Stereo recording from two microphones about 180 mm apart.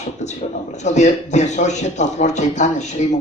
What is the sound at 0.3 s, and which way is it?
A man's voice, 40° left (ahead or behind).